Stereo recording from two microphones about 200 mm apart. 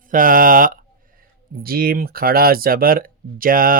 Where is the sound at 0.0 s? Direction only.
45° right (ahead or behind).